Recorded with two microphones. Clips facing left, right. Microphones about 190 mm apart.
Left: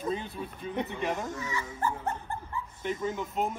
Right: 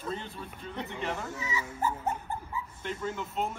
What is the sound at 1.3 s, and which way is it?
Speech, 10° right (ahead or behind).